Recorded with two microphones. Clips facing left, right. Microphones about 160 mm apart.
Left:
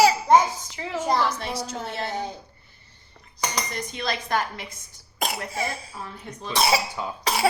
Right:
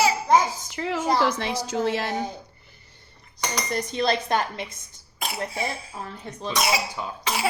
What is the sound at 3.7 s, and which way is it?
Speech, 35° right (ahead or behind).